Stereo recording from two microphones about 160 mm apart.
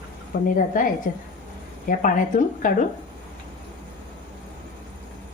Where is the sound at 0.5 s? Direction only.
55° left (ahead or behind).